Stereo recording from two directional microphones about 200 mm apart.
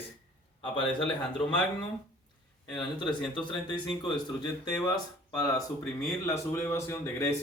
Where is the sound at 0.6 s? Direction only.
25° left (ahead or behind).